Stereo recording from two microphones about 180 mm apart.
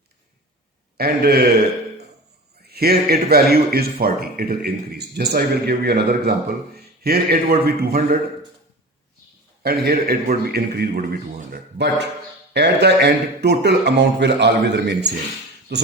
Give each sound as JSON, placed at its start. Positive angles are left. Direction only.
{"t": 0.9, "sound": "a man's voice", "side_deg": -60}
{"t": 2.6, "sound": "a man's voice", "side_deg": -60}
{"t": 9.6, "sound": "a man's voice", "side_deg": -60}